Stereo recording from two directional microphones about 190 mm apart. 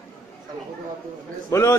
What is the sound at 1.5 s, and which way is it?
Speech, 15° left (ahead or behind).